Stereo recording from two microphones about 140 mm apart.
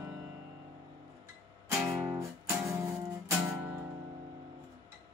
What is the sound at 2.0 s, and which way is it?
Music, 20° right (ahead or behind).